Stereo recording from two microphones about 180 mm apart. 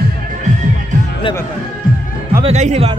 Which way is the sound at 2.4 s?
35° right (ahead or behind).